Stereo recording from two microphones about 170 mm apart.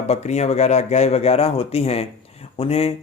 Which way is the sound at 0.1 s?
40° left (ahead or behind).